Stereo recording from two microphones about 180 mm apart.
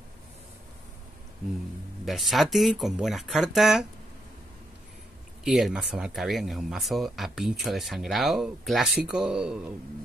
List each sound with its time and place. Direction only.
2.0 s speech: centre (ahead or behind)
5.4 s speech: centre (ahead or behind)